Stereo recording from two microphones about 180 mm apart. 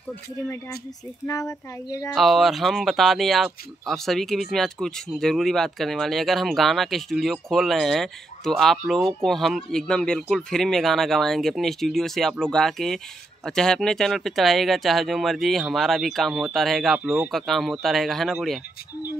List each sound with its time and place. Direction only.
1.2 s speech: 20° left (ahead or behind)
2.1 s speech: centre (ahead or behind)